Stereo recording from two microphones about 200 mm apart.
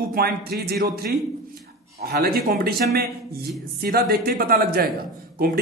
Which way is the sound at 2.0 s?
50° right (ahead or behind).